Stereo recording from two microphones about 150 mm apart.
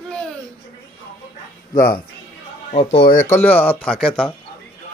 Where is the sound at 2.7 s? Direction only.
40° left (ahead or behind).